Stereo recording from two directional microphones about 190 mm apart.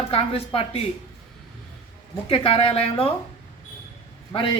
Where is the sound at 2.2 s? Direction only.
30° left (ahead or behind).